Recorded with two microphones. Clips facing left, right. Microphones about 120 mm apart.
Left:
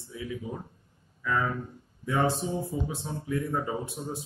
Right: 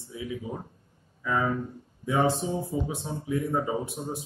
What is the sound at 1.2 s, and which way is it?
A man's voice, 20° right (ahead or behind).